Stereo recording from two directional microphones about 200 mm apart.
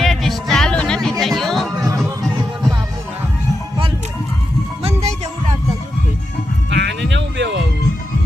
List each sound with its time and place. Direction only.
0.0 s music: centre (ahead or behind)
4.8 s music: 35° right (ahead or behind)
6.7 s music: 60° right (ahead or behind)